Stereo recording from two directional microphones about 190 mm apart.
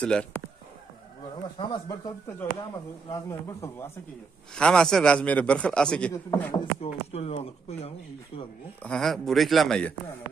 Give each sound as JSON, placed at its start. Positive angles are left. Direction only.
{"t": 0.0, "sound": "a man's voice", "side_deg": 5}
{"t": 1.6, "sound": "speech", "side_deg": 25}
{"t": 4.6, "sound": "a man's voice", "side_deg": 5}
{"t": 6.8, "sound": "speech", "side_deg": 30}
{"t": 8.8, "sound": "a man's voice", "side_deg": 0}